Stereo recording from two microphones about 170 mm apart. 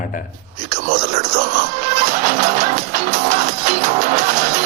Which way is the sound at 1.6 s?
45° right (ahead or behind).